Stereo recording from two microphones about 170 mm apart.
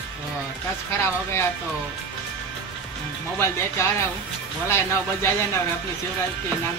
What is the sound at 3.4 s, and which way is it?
Speech, 15° left (ahead or behind).